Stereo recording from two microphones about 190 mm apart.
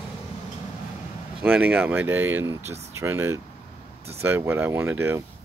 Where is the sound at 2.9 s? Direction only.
15° right (ahead or behind).